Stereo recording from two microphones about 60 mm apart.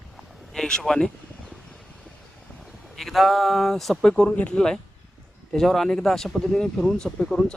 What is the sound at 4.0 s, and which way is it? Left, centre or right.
Speech, centre.